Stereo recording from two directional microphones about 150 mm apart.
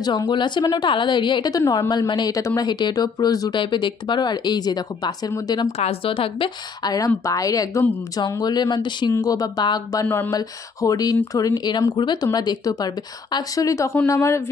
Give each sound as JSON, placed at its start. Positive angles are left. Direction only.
{"t": 0.0, "sound": "a woman's voice", "side_deg": 30}
{"t": 5.7, "sound": "a woman's voice", "side_deg": 40}
{"t": 10.0, "sound": "speech", "side_deg": 10}
{"t": 10.3, "sound": "a woman's voice", "side_deg": 25}